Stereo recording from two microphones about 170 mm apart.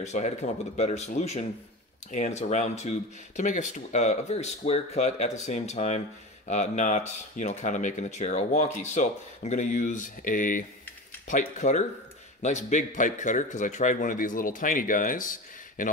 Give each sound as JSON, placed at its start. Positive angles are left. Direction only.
{"t": 0.0, "sound": "speech", "side_deg": 45}